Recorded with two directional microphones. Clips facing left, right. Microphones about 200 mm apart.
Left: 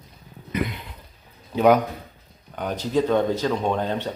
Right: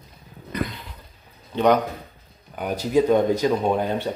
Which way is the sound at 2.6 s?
10° right (ahead or behind).